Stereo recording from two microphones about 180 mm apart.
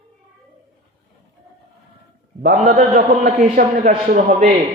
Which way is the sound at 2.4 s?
40° right (ahead or behind).